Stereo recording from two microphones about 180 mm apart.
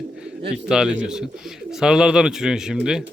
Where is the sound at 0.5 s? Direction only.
5° right (ahead or behind).